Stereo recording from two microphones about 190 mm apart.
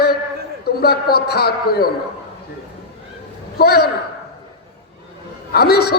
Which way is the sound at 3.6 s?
55° left (ahead or behind).